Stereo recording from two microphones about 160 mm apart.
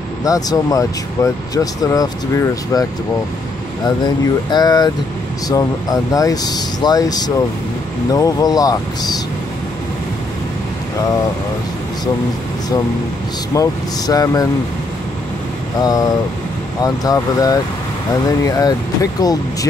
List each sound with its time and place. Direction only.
0.2 s speech: 20° left (ahead or behind)
4.0 s speech: 25° left (ahead or behind)
13.5 s speech: 20° left (ahead or behind)
15.8 s speech: 25° left (ahead or behind)